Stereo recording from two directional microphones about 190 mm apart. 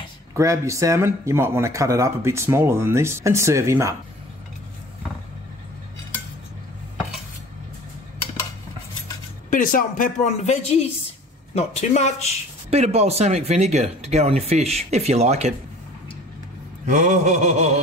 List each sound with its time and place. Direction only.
0.3 s speech: 15° right (ahead or behind)
9.5 s speech: 45° left (ahead or behind)
12.6 s speech: 35° right (ahead or behind)
16.8 s speech: 40° right (ahead or behind)